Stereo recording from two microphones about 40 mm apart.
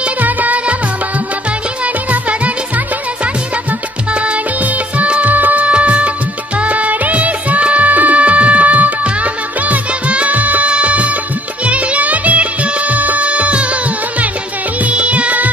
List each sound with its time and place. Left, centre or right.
0.0 s music of bollywood: right
2.0 s music: right
4.1 s music: right
4.9 s music of bollywood: right
5.3 s music: right
5.7 s music: right
11.6 s music of bollywood: right
14.8 s music: right